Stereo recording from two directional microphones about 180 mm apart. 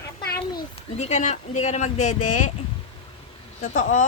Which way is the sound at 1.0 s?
40° left (ahead or behind).